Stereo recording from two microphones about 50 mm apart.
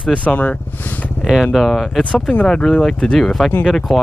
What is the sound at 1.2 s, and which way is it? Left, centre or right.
Speech, centre.